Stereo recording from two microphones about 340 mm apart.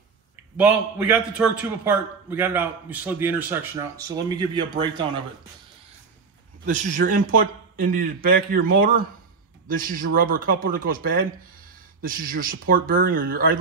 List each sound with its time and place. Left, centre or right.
0.6 s a man's voice: centre
6.6 s a man's voice: right